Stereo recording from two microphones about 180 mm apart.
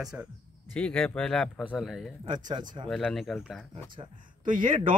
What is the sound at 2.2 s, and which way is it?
Speech, 25° right (ahead or behind).